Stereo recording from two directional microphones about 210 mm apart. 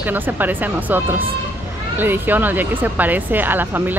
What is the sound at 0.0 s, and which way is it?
Speech, 10° right (ahead or behind).